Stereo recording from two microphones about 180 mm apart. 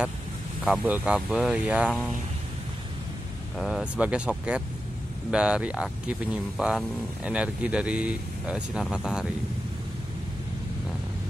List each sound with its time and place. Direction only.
0.7 s speech: 10° right (ahead or behind)
3.5 s speech: centre (ahead or behind)